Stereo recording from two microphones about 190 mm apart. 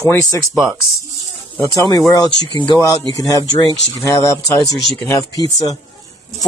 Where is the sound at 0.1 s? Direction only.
15° left (ahead or behind).